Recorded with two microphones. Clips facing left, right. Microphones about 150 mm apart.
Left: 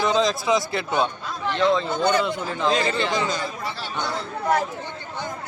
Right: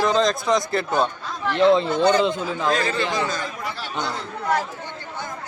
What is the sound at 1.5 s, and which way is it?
A man's voice, 30° right (ahead or behind).